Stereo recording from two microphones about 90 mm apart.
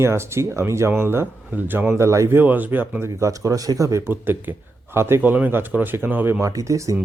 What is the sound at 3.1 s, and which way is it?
Speech, 35° right (ahead or behind).